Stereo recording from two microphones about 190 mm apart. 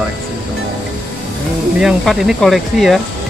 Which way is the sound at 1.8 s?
Centre (ahead or behind).